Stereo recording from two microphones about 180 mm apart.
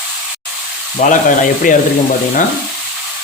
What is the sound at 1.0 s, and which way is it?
Speech, 45° left (ahead or behind).